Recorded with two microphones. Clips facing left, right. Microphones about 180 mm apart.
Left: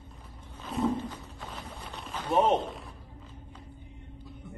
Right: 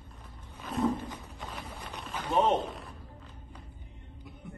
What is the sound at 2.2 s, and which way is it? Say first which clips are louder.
Speech: left 2 dB; 15° left (ahead or behind).